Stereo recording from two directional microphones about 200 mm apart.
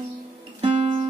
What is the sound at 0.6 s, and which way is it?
Music, 30° right (ahead or behind).